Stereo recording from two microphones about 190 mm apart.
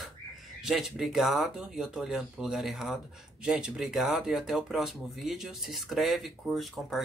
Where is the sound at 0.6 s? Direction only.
Centre (ahead or behind).